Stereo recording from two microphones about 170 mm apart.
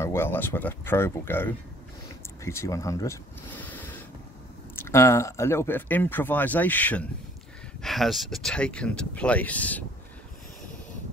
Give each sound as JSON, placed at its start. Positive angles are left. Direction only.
{"t": 0.0, "sound": "speech", "side_deg": 15}